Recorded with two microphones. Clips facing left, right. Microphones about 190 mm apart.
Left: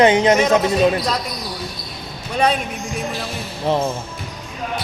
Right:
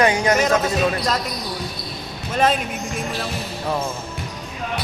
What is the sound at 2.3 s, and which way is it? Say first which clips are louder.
Speech: left 1 dB; centre (ahead or behind).